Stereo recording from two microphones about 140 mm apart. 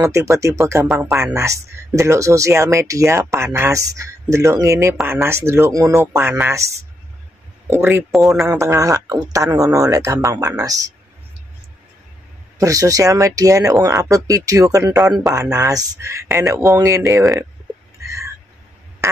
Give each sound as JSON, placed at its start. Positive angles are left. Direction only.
{"t": 0.0, "sound": "speech", "side_deg": -20}
{"t": 7.7, "sound": "speech", "side_deg": -20}
{"t": 8.1, "sound": "speech", "side_deg": 0}
{"t": 8.5, "sound": "speech", "side_deg": -20}
{"t": 12.5, "sound": "speech", "side_deg": -25}
{"t": 18.0, "sound": "a sound", "side_deg": -20}